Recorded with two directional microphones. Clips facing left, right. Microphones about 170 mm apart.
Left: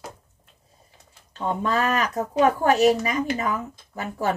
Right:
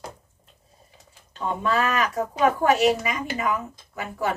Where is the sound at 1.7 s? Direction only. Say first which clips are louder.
Right 1 dB; 35° left (ahead or behind).